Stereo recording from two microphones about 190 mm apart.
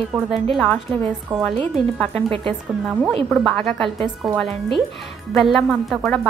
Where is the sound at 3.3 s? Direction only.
Centre (ahead or behind).